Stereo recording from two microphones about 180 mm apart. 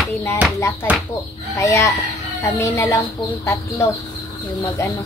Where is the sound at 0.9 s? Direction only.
10° right (ahead or behind).